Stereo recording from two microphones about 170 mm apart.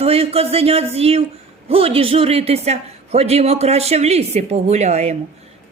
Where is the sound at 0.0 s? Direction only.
35° right (ahead or behind).